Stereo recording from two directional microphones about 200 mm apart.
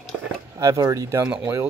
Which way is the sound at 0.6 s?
15° right (ahead or behind).